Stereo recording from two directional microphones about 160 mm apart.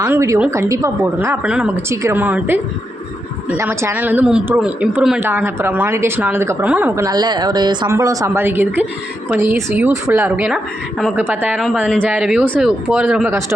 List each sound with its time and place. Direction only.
0.0 s a woman's voice: 20° right (ahead or behind)
1.5 s a woman's voice: 5° right (ahead or behind)
3.6 s a woman's voice: 15° right (ahead or behind)